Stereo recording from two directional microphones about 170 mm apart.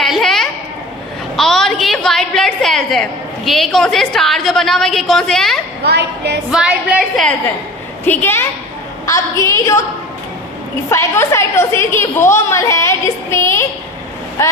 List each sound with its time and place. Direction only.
0.0 s a sound: centre (ahead or behind)
1.4 s a woman's voice: centre (ahead or behind)
5.8 s a woman's voice: 80° right
6.5 s a woman's voice: 5° right (ahead or behind)
8.0 s a woman's voice: 10° left (ahead or behind)
10.8 s a woman's voice: 15° left (ahead or behind)